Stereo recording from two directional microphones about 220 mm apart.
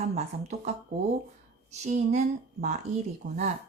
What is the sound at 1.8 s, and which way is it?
Speech, 30° right (ahead or behind).